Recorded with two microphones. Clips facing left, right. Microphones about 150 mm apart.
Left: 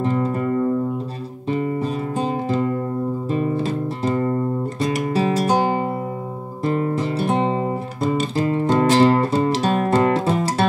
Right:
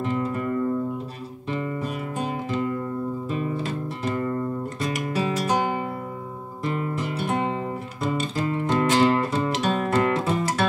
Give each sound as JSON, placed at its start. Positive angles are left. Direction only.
{"t": 0.0, "sound": "music", "side_deg": 35}